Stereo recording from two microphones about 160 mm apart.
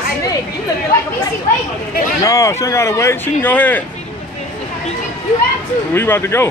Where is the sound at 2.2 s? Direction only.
20° left (ahead or behind).